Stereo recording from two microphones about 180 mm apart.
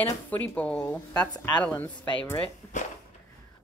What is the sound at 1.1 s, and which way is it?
Speech, 20° left (ahead or behind).